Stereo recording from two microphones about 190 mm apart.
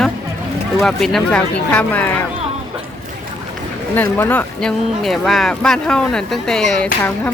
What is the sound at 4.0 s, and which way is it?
Speech, 10° left (ahead or behind).